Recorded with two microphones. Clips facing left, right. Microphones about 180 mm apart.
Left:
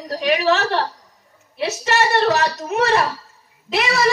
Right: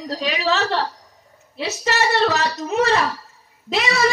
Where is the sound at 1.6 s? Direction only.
65° left (ahead or behind).